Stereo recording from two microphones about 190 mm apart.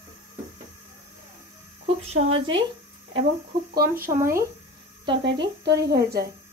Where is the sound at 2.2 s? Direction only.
40° right (ahead or behind).